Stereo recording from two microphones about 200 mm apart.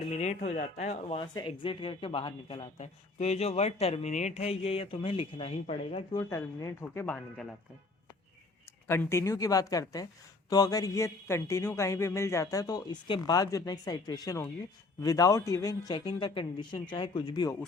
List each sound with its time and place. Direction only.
0.1 s speech: 35° left (ahead or behind)
1.2 s speech: 25° left (ahead or behind); by 7.4 s 10° left (ahead or behind)
8.9 s speech: 10° left (ahead or behind)